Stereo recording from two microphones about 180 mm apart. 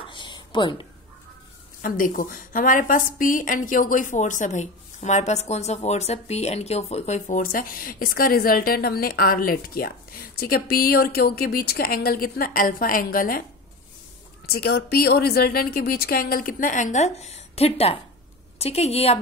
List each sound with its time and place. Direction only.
0.0 s a sound: 25° left (ahead or behind)
1.8 s a woman's voice: 50° left (ahead or behind)
14.4 s a woman's voice: 60° left (ahead or behind); by 19.1 s 35° left (ahead or behind)